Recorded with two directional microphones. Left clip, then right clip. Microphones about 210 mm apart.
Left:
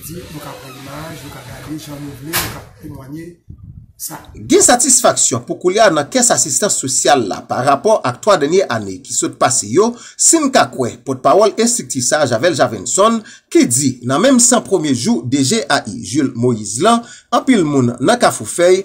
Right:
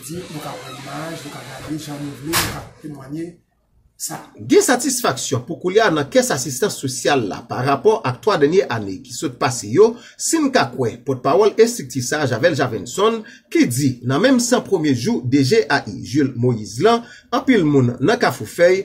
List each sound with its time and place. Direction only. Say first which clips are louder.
4.5 s speech: left 4 dB; 30° left (ahead or behind)